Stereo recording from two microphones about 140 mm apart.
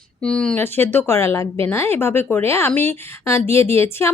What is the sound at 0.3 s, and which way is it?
Speech, 5° left (ahead or behind).